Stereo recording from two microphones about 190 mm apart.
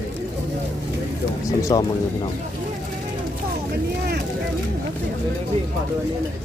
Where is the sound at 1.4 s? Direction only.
15° left (ahead or behind).